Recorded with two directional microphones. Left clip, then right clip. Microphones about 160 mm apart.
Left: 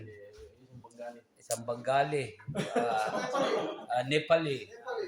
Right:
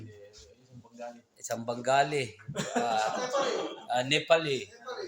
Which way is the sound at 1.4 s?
40° right (ahead or behind).